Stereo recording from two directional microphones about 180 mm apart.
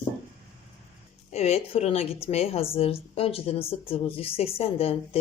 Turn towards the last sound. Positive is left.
turn(degrees=35)  # may be behind; listen again after turning